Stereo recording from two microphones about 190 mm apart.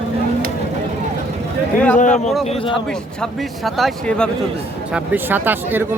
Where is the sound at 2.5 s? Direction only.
30° left (ahead or behind).